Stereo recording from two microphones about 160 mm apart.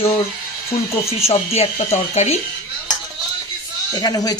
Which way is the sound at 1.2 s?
40° left (ahead or behind).